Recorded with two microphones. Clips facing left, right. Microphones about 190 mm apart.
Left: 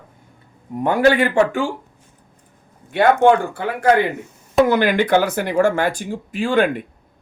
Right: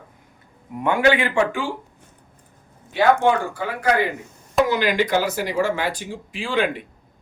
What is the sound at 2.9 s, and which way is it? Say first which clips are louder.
Speech: left 4 dB; 60° left (ahead or behind).